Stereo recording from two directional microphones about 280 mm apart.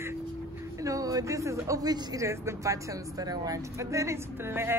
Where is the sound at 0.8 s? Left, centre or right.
Centre.